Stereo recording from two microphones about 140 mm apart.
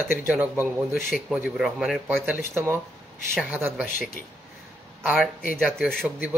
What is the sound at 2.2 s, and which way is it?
Speech, 15° right (ahead or behind).